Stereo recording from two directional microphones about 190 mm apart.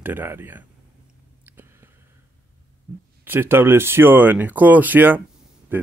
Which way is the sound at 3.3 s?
10° right (ahead or behind).